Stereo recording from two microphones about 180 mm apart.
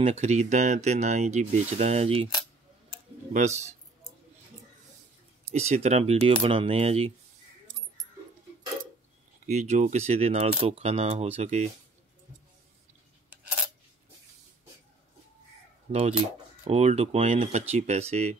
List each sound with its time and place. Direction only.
0.0 s speech: 40° right (ahead or behind)
3.3 s speech: 40° right (ahead or behind)
5.4 s speech: 35° right (ahead or behind)
9.5 s speech: 40° right (ahead or behind)
15.9 s speech: 35° right (ahead or behind)